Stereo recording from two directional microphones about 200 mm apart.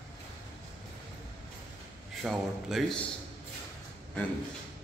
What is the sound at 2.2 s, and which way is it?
Speech, centre (ahead or behind).